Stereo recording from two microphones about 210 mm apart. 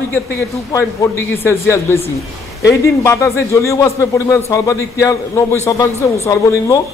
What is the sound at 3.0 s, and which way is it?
A man's voice, 15° left (ahead or behind).